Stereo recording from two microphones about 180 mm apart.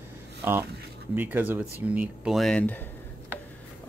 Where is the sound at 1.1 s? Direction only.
10° right (ahead or behind); by 2.8 s 10° left (ahead or behind).